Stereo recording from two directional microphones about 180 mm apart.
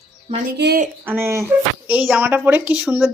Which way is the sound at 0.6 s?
60° right (ahead or behind).